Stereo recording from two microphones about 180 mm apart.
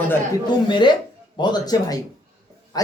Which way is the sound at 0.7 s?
25° left (ahead or behind).